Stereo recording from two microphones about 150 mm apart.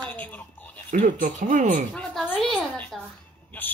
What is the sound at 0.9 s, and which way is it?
Speech, 60° right (ahead or behind).